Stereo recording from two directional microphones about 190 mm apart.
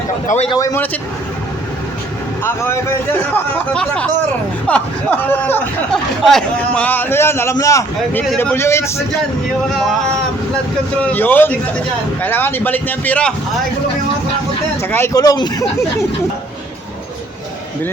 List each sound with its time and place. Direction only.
0.5 s speech: 15° left (ahead or behind)
2.4 s speech: 15° left (ahead or behind)
11.0 s speech: 10° left (ahead or behind)
14.8 s speech: 15° left (ahead or behind)